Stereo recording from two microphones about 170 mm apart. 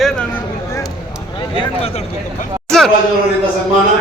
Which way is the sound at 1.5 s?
35° left (ahead or behind).